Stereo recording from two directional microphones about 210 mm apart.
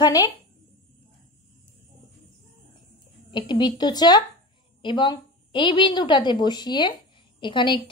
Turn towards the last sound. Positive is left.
turn(degrees=25)  # may be behind; listen again after turning